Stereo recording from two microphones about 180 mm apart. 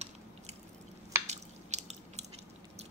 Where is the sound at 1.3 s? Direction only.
40° right (ahead or behind).